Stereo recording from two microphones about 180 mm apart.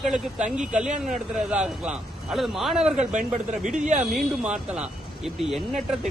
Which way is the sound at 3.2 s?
45° right (ahead or behind).